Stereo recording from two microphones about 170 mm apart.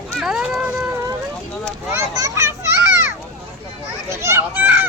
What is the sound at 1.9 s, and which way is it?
Children playing, 20° right (ahead or behind).